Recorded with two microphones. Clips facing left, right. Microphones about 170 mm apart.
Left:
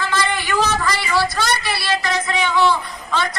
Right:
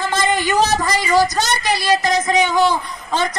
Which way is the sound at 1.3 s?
45° right (ahead or behind).